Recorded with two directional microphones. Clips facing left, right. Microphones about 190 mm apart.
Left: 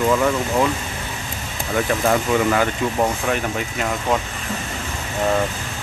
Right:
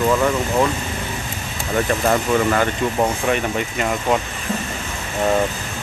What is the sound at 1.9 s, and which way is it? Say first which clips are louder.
Speech: even; 5° left (ahead or behind).